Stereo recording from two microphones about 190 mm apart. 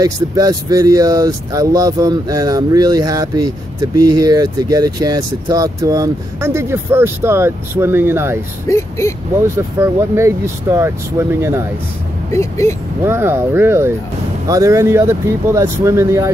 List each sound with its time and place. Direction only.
0.0 s speech: 20° right (ahead or behind)
8.6 s speech: 15° left (ahead or behind)
9.4 s speech: 15° right (ahead or behind)
12.3 s speech: 15° left (ahead or behind)
13.0 s speech: 15° right (ahead or behind)